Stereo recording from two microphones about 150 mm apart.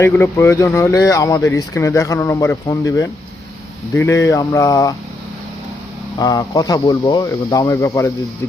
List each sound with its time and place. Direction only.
0.0 s speech: 15° left (ahead or behind)
6.1 s speech: 25° left (ahead or behind)